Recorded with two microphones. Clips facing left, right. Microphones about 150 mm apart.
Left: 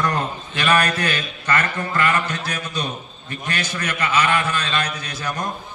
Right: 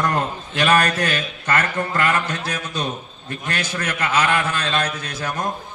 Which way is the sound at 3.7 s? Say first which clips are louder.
Even; 50° right (ahead or behind).